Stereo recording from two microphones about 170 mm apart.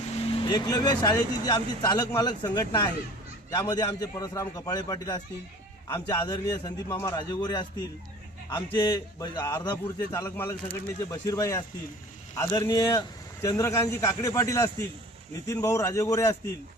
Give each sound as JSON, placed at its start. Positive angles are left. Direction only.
{"t": 0.4, "sound": "a man's voice", "side_deg": 25}